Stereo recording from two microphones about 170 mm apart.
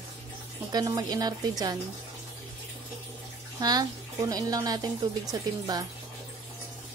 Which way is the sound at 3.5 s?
25° right (ahead or behind).